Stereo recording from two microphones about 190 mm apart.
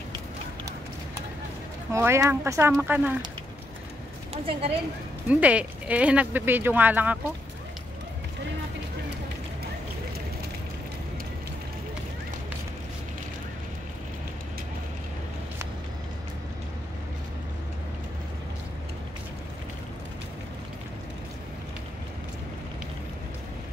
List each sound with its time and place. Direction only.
1.9 s speech: 15° right (ahead or behind)
4.3 s speech: 30° right (ahead or behind)
5.3 s speech: 5° right (ahead or behind)